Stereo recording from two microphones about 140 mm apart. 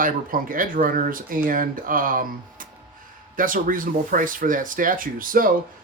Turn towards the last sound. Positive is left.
turn(degrees=-80)